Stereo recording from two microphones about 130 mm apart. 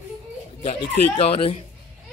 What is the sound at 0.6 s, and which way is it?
Speech, 50° left (ahead or behind).